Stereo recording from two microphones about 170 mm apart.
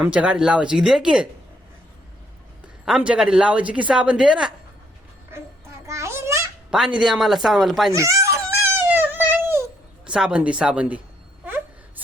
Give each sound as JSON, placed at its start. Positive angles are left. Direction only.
{"t": 0.0, "sound": "speech", "side_deg": -5}
{"t": 2.8, "sound": "speech", "side_deg": -5}
{"t": 5.8, "sound": "a sound", "side_deg": -15}
{"t": 6.7, "sound": "speech", "side_deg": -5}
{"t": 7.9, "sound": "a sound", "side_deg": -15}
{"t": 10.1, "sound": "speech", "side_deg": -5}